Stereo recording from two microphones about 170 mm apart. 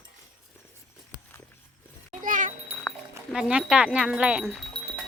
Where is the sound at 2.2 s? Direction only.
50° right (ahead or behind).